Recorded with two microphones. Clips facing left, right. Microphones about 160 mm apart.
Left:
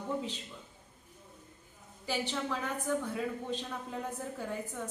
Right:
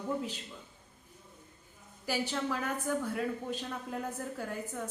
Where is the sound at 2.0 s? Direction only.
5° right (ahead or behind).